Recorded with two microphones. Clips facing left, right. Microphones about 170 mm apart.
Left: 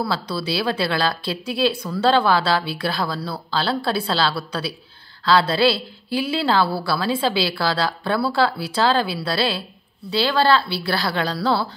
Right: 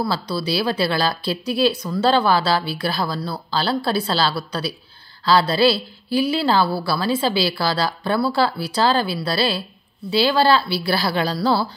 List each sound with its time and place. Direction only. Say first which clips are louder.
0.1 s a woman's voice: right 1 dB; centre (ahead or behind)